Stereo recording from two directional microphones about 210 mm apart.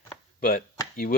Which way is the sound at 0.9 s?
45° left (ahead or behind).